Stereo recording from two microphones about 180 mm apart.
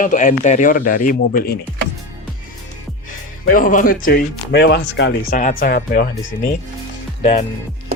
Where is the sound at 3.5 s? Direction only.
50° left (ahead or behind).